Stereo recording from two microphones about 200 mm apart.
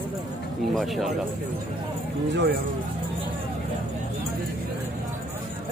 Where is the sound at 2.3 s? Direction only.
55° right (ahead or behind).